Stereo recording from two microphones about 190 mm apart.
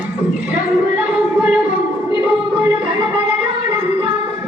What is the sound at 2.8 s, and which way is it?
Music, 25° right (ahead or behind).